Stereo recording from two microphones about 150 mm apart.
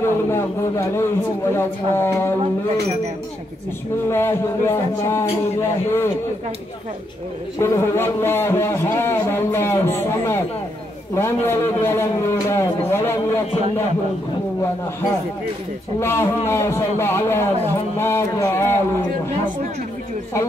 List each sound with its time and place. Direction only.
0.0 s speech: 15° left (ahead or behind)
4.1 s speech: 15° left (ahead or behind)
7.5 s speech: 20° left (ahead or behind)
16.0 s speech: 15° left (ahead or behind)